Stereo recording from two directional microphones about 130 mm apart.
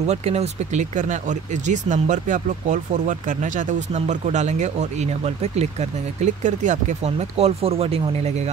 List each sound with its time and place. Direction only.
0.0 s speech: 55° right (ahead or behind)